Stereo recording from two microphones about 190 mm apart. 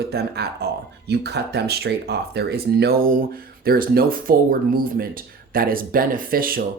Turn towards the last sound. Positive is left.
turn(degrees=-50)  # may be behind; listen again after turning